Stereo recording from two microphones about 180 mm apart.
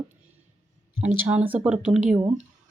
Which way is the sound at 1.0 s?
10° right (ahead or behind).